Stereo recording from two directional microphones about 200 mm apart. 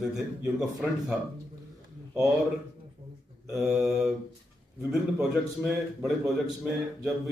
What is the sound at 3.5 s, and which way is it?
A man's voice, centre (ahead or behind).